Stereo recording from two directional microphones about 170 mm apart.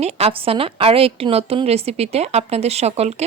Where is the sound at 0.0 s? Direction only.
40° right (ahead or behind).